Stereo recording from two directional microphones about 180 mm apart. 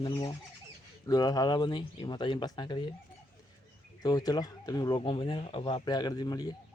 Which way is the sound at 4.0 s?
20° left (ahead or behind).